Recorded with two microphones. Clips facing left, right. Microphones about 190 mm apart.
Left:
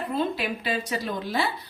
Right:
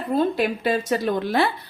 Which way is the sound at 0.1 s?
45° right (ahead or behind).